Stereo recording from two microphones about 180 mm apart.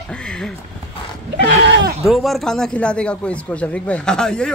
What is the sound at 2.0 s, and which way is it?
Speech, centre (ahead or behind).